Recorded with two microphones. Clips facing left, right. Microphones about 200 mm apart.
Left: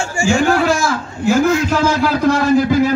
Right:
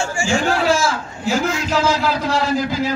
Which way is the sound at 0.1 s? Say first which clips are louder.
Left 9 dB; 40° left (ahead or behind).